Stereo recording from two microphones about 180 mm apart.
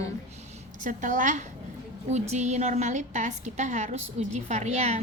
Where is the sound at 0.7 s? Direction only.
45° right (ahead or behind).